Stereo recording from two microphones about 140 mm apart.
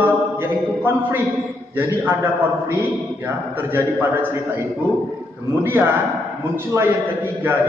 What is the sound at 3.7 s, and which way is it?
Speech, 15° right (ahead or behind).